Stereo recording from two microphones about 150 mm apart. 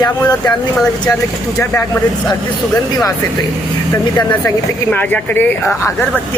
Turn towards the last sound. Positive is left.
turn(degrees=15)  # may be behind; listen again after turning